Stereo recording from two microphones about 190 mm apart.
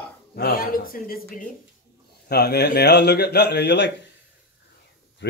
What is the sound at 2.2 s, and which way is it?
A man's voice, 60° left (ahead or behind).